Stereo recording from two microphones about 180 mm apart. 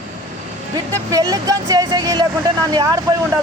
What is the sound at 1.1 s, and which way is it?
Speech, 20° right (ahead or behind).